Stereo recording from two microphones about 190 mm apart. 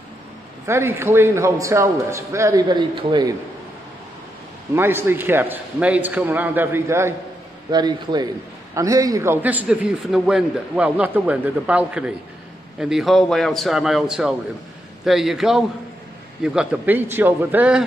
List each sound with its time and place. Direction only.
0.7 s a man's voice: 15° right (ahead or behind)
4.7 s a man's voice: 10° right (ahead or behind)